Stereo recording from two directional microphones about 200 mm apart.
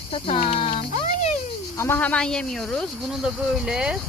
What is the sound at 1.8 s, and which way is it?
Speech, 10° left (ahead or behind).